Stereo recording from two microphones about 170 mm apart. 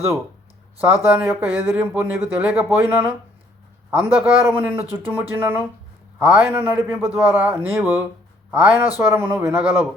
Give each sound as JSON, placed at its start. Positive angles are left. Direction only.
{"t": 1.1, "sound": "speech", "side_deg": -10}